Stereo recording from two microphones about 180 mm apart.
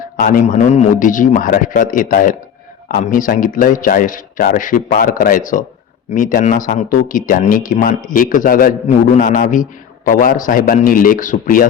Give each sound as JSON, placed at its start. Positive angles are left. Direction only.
{"t": 0.2, "sound": "a man's voice", "side_deg": 50}